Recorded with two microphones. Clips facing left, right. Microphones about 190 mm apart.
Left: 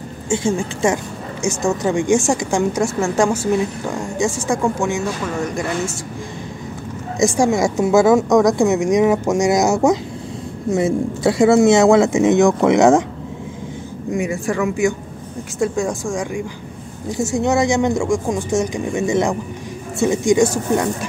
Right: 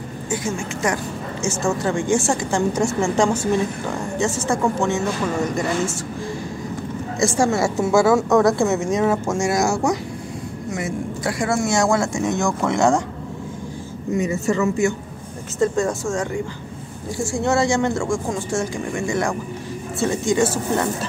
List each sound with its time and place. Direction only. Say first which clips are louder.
0.3 s speech: left 6 dB; 30° left (ahead or behind)
1.4 s a woman's voice: left 3 dB; 15° left (ahead or behind)
7.2 s a woman's voice: left 3 dB; 15° left (ahead or behind)
14.1 s a woman's voice: even; 10° left (ahead or behind)